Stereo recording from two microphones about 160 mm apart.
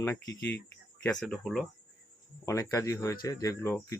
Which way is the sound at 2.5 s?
20° left (ahead or behind).